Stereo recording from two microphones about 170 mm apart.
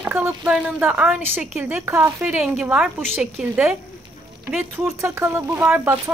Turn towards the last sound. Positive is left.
turn(degrees=-15)  # may be behind; listen again after turning